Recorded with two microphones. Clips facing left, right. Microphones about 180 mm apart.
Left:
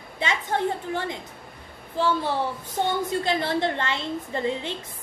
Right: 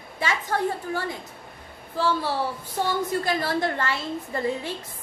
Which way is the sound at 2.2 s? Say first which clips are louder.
Left 1 dB; 20° left (ahead or behind).